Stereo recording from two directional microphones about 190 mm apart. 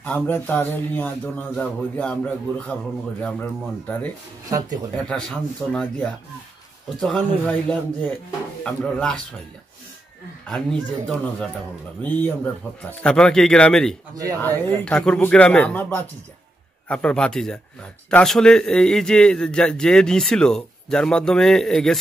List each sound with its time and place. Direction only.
0.0 s speech: 10° left (ahead or behind)
4.5 s speech: 20° right (ahead or behind)
4.9 s a man's voice: 5° left (ahead or behind)
10.4 s a man's voice: 5° left (ahead or behind)